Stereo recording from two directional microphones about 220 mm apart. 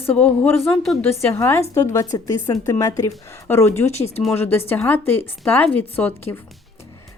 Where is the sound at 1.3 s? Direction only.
10° left (ahead or behind).